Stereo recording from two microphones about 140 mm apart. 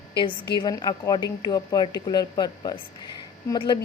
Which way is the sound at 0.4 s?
35° left (ahead or behind).